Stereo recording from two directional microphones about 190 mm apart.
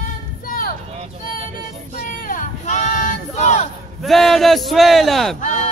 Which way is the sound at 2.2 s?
45° left (ahead or behind).